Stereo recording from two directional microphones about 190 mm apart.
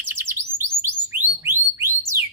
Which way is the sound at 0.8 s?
10° right (ahead or behind).